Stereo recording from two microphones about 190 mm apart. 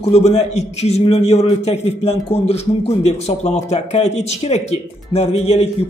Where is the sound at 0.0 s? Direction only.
35° left (ahead or behind).